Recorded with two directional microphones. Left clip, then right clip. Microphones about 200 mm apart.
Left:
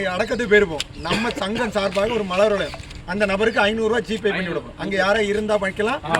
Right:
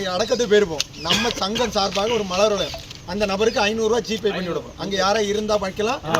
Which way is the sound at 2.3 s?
15° left (ahead or behind).